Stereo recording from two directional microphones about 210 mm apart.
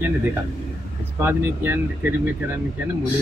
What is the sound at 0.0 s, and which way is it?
Speech, 10° right (ahead or behind).